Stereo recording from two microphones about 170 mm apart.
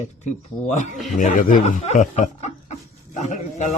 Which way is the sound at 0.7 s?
45° left (ahead or behind).